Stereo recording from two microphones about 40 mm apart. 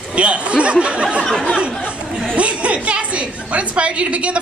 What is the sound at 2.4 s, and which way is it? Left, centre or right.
A woman's voice, right.